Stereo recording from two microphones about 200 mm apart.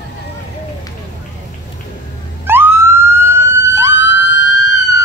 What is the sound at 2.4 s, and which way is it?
Police car, 10° right (ahead or behind).